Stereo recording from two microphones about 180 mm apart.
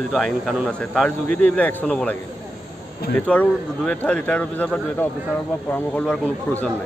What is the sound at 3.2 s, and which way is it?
A man's voice, 5° left (ahead or behind).